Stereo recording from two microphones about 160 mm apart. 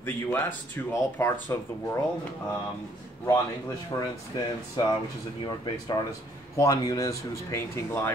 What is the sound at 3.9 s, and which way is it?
Speech, 20° left (ahead or behind).